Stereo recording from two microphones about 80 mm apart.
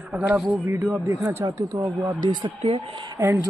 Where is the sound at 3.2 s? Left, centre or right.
Right.